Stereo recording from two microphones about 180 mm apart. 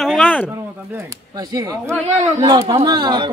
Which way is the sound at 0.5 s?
15° right (ahead or behind).